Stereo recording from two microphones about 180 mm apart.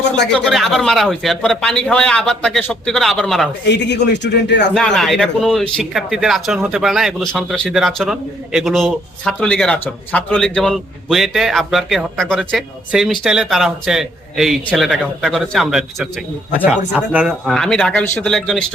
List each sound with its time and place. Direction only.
0.3 s speech: centre (ahead or behind)
3.7 s a man's voice: 75° left (ahead or behind)
4.7 s speech: 5° left (ahead or behind)